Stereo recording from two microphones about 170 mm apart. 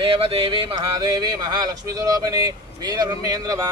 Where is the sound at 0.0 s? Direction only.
30° right (ahead or behind).